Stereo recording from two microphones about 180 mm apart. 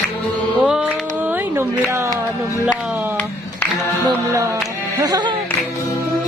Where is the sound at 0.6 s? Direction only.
5° right (ahead or behind).